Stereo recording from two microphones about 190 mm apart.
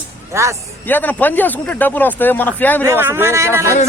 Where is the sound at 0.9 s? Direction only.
10° left (ahead or behind).